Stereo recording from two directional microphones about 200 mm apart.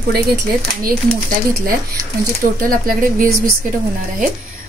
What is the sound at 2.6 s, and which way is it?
Speech, 45° right (ahead or behind).